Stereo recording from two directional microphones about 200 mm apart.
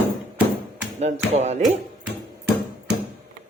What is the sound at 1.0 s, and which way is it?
Speech, 35° right (ahead or behind).